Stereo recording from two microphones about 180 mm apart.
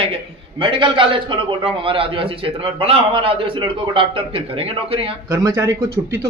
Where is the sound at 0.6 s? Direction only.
30° right (ahead or behind).